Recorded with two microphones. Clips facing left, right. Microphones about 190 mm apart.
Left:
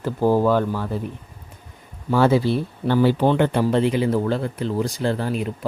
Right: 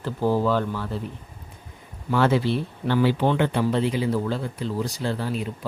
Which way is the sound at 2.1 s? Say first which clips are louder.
Left 4 dB; 40° left (ahead or behind).